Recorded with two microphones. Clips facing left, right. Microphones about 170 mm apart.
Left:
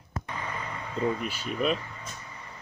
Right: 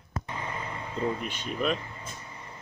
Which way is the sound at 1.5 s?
Centre (ahead or behind).